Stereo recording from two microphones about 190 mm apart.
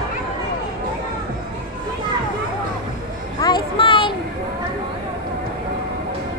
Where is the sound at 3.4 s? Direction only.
25° left (ahead or behind).